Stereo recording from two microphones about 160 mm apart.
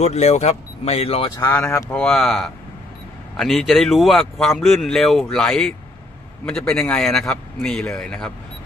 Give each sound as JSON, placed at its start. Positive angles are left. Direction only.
{"t": 0.0, "sound": "speech", "side_deg": 40}
{"t": 1.5, "sound": "speech", "side_deg": 15}
{"t": 2.0, "sound": "speech", "side_deg": 5}